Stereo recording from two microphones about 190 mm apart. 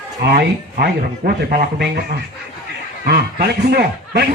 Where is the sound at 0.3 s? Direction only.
55° right (ahead or behind).